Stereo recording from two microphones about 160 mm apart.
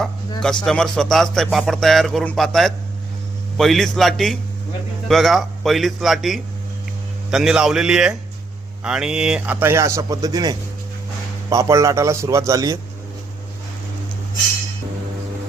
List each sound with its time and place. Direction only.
0.6 s a man's voice: 5° left (ahead or behind); by 12.8 s 20° right (ahead or behind)